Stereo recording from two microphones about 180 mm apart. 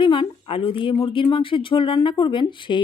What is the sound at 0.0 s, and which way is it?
A woman's voice, 25° left (ahead or behind).